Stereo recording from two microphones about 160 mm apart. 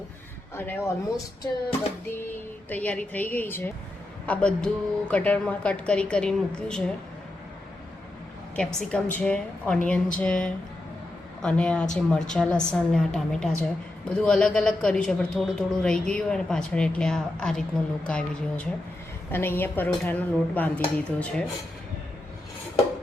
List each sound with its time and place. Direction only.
0.5 s a woman's voice: 15° left (ahead or behind)
2.6 s a woman's voice: 10° left (ahead or behind)
8.5 s a woman's voice: 10° left (ahead or behind)